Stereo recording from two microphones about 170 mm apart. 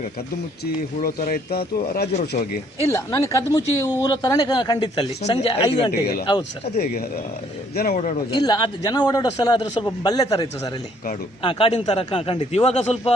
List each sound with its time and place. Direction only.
0.6 s speech: 60° left (ahead or behind)
2.9 s a man's voice: 20° left (ahead or behind)
5.2 s speech: 35° left (ahead or behind)
5.9 s speech: 65° left (ahead or behind)
7.9 s a man's voice: 45° left (ahead or behind)
8.3 s a man's voice: 25° left (ahead or behind)
11.4 s speech: 30° left (ahead or behind)